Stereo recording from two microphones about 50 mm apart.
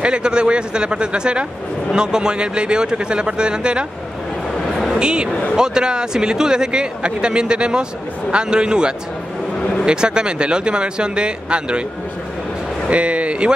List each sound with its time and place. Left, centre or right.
0.0 s a man's voice: centre
4.9 s a man's voice: centre
12.9 s a man's voice: right